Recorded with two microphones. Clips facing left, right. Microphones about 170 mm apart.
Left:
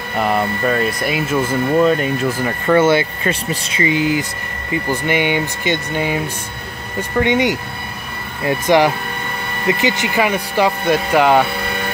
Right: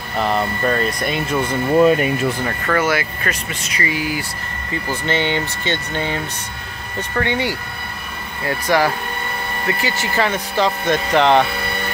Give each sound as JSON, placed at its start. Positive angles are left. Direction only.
{"t": 0.2, "sound": "speech", "side_deg": 5}
{"t": 2.7, "sound": "speech", "side_deg": 25}